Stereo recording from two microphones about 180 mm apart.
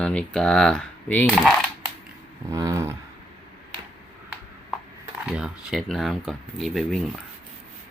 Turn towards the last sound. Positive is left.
turn(degrees=0)  # may be behind; listen again after turning